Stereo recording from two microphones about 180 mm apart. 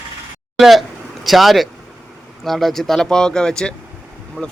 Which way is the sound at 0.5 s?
Centre (ahead or behind).